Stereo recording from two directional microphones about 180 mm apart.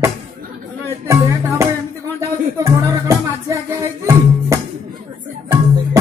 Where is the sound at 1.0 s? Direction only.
15° right (ahead or behind).